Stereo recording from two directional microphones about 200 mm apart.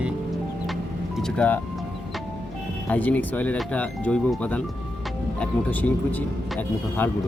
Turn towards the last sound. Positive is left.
turn(degrees=10)  # may be behind; listen again after turning